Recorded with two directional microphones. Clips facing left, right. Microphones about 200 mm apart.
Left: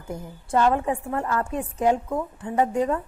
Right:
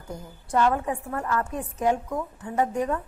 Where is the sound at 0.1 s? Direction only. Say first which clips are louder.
Left 2 dB; 25° left (ahead or behind).